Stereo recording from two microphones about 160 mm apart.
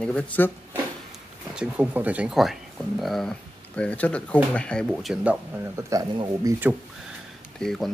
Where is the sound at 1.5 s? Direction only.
5° right (ahead or behind).